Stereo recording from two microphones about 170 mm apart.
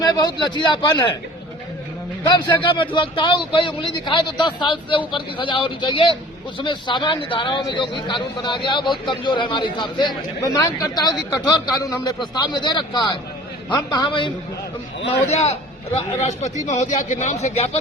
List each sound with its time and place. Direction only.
0.0 s a man's voice: 25° left (ahead or behind)
2.3 s a man's voice: 30° left (ahead or behind)
15.3 s speech: 40° left (ahead or behind)